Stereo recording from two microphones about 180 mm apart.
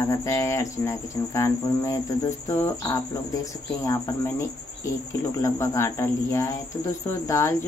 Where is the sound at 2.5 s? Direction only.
20° left (ahead or behind).